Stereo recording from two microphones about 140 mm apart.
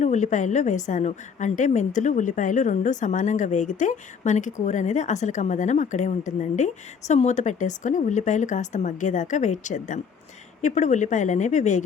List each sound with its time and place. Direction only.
0.0 s a woman's voice: 60° left (ahead or behind)